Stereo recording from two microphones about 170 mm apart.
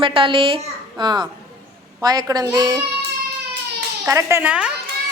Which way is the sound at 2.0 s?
25° right (ahead or behind).